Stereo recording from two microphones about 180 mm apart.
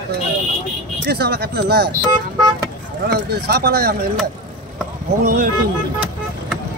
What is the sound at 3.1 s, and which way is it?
Speech, 60° right (ahead or behind).